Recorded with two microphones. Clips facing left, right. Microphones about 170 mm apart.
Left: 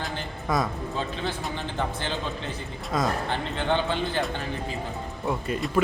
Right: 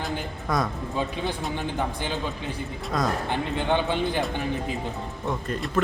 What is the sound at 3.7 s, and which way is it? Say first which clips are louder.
Speech: right 1 dB; 15° right (ahead or behind).